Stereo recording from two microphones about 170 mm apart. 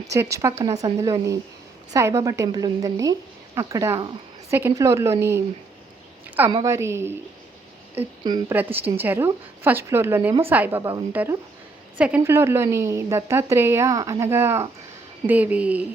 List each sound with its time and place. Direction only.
0.1 s a woman's voice: 20° right (ahead or behind)
6.5 s a woman's voice: 25° right (ahead or behind)
6.7 s a woman's voice: 15° right (ahead or behind)
8.2 s a woman's voice: 25° right (ahead or behind)
8.5 s a woman's voice: 10° right (ahead or behind)